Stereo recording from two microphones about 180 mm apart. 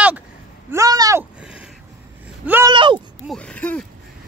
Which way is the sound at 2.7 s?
25° right (ahead or behind).